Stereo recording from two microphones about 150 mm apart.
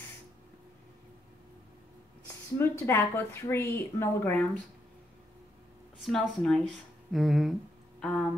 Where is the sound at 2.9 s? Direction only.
15° left (ahead or behind).